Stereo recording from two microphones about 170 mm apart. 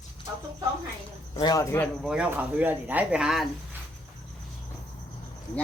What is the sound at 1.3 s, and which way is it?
Speech, 25° left (ahead or behind).